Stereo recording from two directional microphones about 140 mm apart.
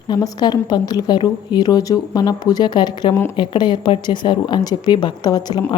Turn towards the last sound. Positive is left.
turn(degrees=30)  # may be behind; listen again after turning